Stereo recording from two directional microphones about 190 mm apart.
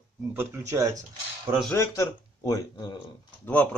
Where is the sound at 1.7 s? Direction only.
15° left (ahead or behind).